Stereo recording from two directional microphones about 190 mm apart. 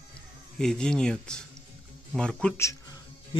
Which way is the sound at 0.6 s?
5° left (ahead or behind).